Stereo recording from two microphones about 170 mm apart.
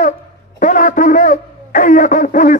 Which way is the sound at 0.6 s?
50° left (ahead or behind).